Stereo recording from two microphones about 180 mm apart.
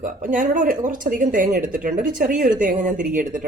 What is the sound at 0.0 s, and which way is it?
A woman's voice, 45° right (ahead or behind).